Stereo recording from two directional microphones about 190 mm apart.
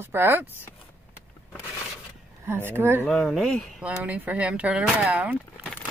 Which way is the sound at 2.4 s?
10° right (ahead or behind).